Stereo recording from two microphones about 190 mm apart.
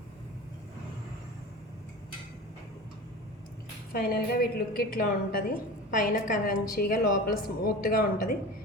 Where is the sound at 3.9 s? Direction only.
55° left (ahead or behind).